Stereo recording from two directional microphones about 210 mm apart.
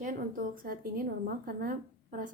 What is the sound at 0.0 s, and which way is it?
A woman's voice, 40° right (ahead or behind).